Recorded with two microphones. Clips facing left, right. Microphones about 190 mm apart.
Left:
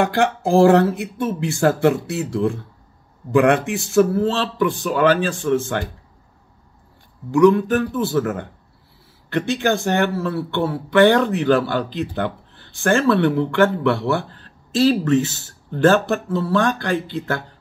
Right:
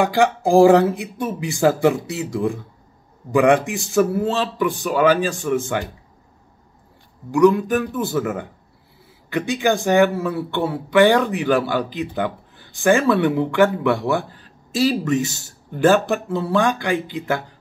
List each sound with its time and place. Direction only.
0.1 s speech: 15° right (ahead or behind)
1.9 s speech: 65° left (ahead or behind)
3.3 s speech: 15° right (ahead or behind)
7.2 s speech: 10° right (ahead or behind)